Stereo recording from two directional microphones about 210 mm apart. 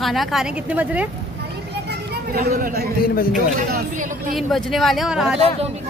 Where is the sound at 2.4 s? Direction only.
45° right (ahead or behind).